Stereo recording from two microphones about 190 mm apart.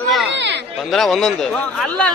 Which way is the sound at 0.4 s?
65° right (ahead or behind).